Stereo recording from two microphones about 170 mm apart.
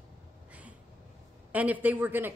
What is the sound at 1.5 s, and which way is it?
Speech, 10° right (ahead or behind).